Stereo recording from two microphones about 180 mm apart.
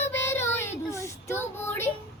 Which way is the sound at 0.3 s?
15° left (ahead or behind).